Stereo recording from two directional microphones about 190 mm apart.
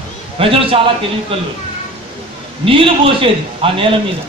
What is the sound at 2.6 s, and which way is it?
A man's voice, 30° right (ahead or behind).